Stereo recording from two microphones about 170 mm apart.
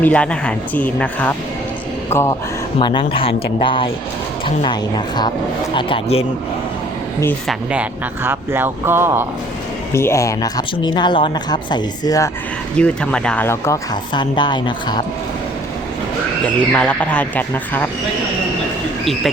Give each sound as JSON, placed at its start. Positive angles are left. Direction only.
{"t": 0.0, "sound": "speech", "side_deg": 10}
{"t": 2.7, "sound": "speech", "side_deg": 30}
{"t": 7.4, "sound": "speech", "side_deg": -5}
{"t": 9.9, "sound": "speech", "side_deg": 15}
{"t": 12.7, "sound": "speech", "side_deg": 5}
{"t": 14.1, "sound": "speech", "side_deg": 25}
{"t": 16.7, "sound": "speech", "side_deg": 5}